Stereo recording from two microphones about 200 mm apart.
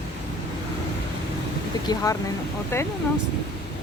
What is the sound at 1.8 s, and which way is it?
Speech, 15° left (ahead or behind).